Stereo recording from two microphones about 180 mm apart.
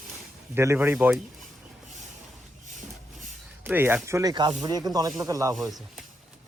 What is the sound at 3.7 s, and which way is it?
Speech, 10° right (ahead or behind).